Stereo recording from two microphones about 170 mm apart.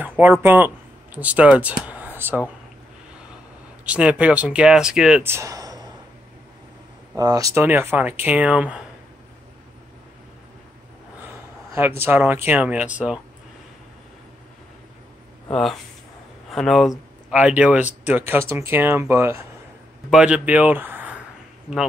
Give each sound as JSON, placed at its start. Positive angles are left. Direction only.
{"t": 0.2, "sound": "speech", "side_deg": -10}
{"t": 3.8, "sound": "speech", "side_deg": -5}
{"t": 5.2, "sound": "speech", "side_deg": -15}
{"t": 7.2, "sound": "speech", "side_deg": -20}
{"t": 12.0, "sound": "speech", "side_deg": -10}
{"t": 15.5, "sound": "speech", "side_deg": 0}